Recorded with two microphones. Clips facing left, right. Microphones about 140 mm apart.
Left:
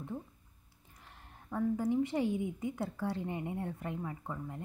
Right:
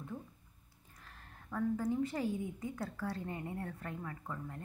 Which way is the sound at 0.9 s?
20° left (ahead or behind).